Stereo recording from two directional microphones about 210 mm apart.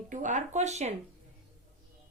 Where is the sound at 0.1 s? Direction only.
35° right (ahead or behind).